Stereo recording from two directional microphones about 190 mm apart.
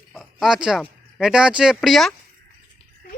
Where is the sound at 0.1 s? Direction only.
Centre (ahead or behind).